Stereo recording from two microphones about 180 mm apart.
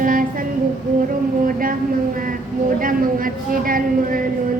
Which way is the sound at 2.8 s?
50° right (ahead or behind).